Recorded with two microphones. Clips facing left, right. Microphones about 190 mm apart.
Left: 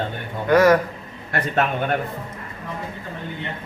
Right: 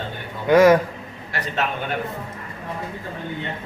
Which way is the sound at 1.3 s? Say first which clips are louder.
Left 4 dB; 50° left (ahead or behind).